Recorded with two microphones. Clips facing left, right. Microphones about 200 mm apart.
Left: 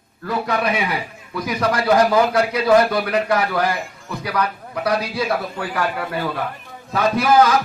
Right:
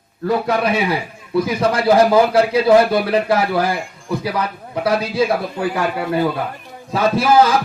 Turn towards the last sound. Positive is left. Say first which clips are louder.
# right 2 dB
turn(degrees=-30)  # may be behind; listen again after turning